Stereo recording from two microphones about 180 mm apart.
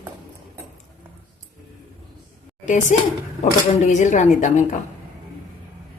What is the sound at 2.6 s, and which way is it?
A woman's voice, 45° left (ahead or behind).